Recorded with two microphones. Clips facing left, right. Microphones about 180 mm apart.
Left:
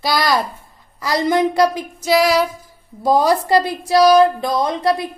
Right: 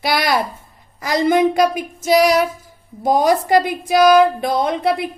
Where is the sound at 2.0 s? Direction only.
45° right (ahead or behind).